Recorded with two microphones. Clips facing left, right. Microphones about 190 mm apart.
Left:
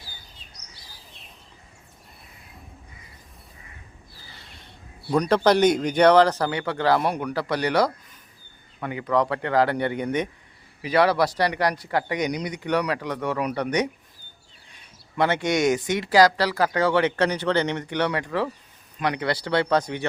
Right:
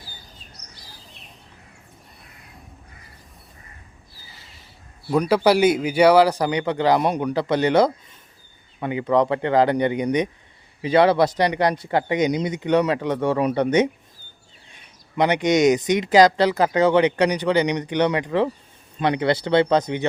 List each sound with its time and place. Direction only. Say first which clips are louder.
4.3 s a man's voice: left 2 dB; centre (ahead or behind); by 13.8 s 25° right (ahead or behind)
15.1 s speech: right 4 dB; 20° right (ahead or behind)